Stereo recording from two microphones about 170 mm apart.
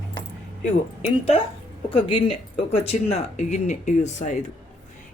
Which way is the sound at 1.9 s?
35° left (ahead or behind).